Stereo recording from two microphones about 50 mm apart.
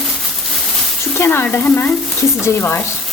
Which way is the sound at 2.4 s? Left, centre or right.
Left.